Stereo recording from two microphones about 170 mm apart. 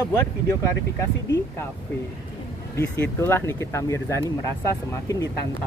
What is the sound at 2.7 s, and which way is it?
Speech, 15° left (ahead or behind).